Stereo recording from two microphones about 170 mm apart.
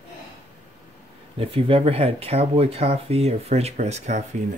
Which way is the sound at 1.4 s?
35° right (ahead or behind).